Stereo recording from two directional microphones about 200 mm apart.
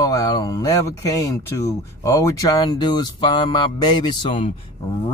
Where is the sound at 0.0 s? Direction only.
20° left (ahead or behind).